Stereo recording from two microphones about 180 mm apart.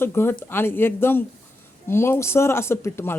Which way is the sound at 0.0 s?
15° left (ahead or behind).